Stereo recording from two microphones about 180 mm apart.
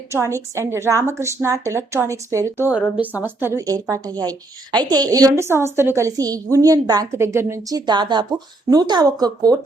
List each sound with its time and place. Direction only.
0.1 s a woman's voice: 15° right (ahead or behind)